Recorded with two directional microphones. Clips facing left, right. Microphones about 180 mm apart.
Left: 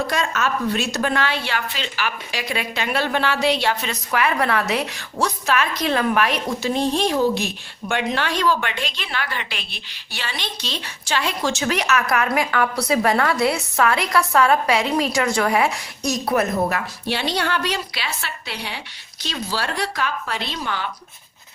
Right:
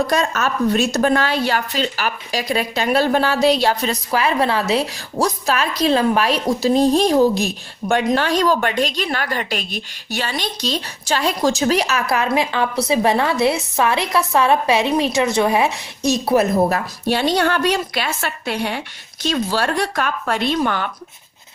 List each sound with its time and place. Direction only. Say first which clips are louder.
0.1 s a woman's voice: right 3 dB; 40° right (ahead or behind)